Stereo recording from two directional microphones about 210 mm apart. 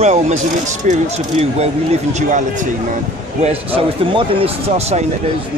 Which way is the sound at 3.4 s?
25° right (ahead or behind).